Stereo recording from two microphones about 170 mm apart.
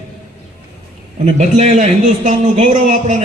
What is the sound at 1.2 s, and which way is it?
A man's voice, 45° right (ahead or behind).